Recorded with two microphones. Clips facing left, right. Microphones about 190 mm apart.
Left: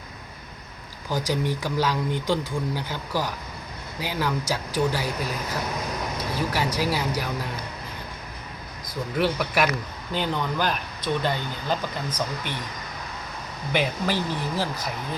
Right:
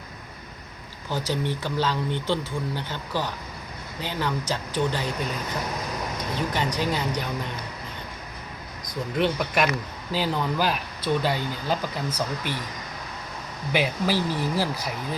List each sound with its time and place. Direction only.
1.1 s speech: 10° left (ahead or behind)
9.1 s speech: 5° left (ahead or behind)
13.7 s speech: 10° right (ahead or behind)